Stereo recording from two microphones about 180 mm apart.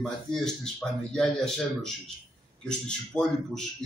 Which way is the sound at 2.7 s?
5° left (ahead or behind).